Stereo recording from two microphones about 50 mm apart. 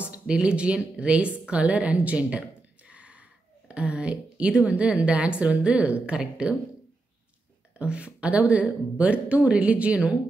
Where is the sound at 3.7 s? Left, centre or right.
Right.